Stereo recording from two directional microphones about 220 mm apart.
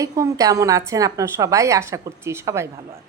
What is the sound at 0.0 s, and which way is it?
A woman's voice, 15° right (ahead or behind).